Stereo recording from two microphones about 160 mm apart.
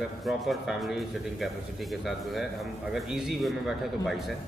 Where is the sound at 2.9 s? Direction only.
Centre (ahead or behind).